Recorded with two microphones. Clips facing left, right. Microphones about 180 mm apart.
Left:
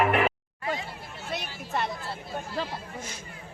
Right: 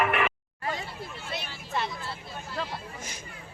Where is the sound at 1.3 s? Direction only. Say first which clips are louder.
Left 3 dB; 55° left (ahead or behind).